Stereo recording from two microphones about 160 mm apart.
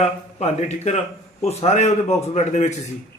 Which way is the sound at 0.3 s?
45° left (ahead or behind).